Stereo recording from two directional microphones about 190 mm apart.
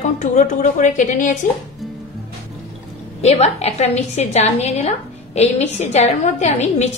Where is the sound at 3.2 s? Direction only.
35° left (ahead or behind).